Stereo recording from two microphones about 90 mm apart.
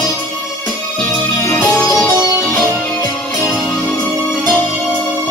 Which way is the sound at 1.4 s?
15° left (ahead or behind).